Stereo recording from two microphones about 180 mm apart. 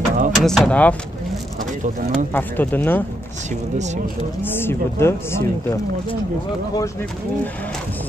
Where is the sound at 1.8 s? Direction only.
45° right (ahead or behind).